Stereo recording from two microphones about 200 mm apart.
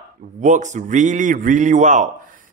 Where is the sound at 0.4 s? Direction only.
40° right (ahead or behind).